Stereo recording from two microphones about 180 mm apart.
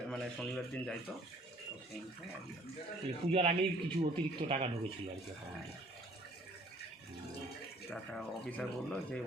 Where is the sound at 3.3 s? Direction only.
35° right (ahead or behind).